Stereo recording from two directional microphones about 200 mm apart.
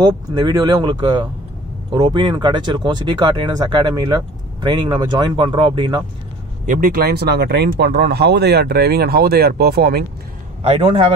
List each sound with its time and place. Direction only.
0.0 s speech: 20° right (ahead or behind)
6.6 s speech: 40° right (ahead or behind)
10.6 s speech: 30° right (ahead or behind)